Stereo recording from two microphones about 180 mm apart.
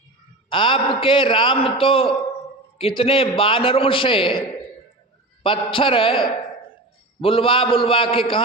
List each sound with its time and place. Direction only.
0.5 s a man's voice: 30° left (ahead or behind)